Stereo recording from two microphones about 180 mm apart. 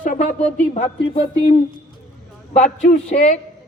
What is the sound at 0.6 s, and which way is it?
Speech, 45° left (ahead or behind).